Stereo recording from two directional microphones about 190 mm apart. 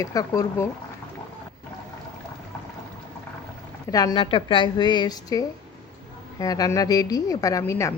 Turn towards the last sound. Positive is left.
turn(degrees=15)  # may be behind; listen again after turning